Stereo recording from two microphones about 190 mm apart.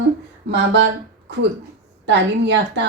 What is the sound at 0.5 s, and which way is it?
Speech, 70° right (ahead or behind).